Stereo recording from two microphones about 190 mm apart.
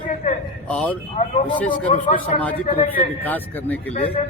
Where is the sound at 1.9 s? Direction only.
35° left (ahead or behind).